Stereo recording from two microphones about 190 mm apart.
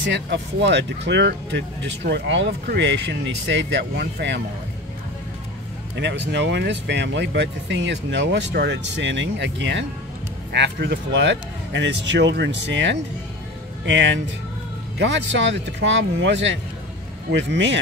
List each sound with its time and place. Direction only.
0.0 s speech: 70° right (ahead or behind)
5.9 s speech: 70° right (ahead or behind)